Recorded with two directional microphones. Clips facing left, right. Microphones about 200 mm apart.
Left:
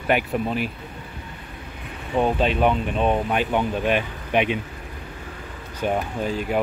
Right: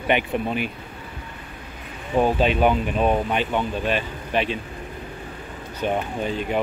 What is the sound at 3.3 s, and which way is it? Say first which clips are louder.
Speech: left 1 dB; 10° left (ahead or behind).